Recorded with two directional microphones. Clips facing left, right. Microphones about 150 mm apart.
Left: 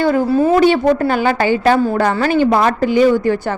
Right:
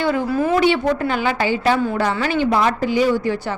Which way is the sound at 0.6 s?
40° left (ahead or behind).